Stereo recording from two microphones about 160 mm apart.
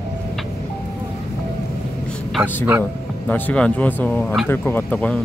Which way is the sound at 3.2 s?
10° left (ahead or behind).